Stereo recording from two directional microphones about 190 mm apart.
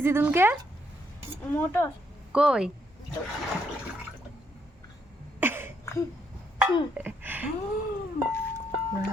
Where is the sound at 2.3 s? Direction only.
5° right (ahead or behind).